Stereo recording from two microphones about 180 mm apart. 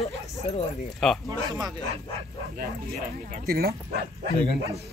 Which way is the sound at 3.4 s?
60° right (ahead or behind).